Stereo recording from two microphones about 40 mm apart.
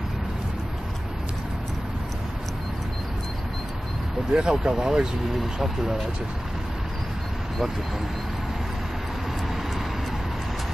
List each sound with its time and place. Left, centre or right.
4.3 s speech: right
5.4 s speech: centre